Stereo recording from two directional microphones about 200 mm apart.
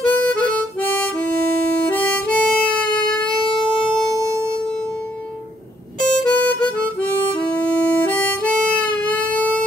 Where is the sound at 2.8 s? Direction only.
25° left (ahead or behind).